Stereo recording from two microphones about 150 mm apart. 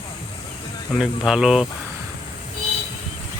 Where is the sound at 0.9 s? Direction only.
5° right (ahead or behind).